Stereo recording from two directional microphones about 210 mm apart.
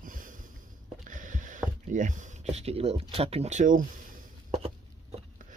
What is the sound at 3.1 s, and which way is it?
Speech, 30° right (ahead or behind).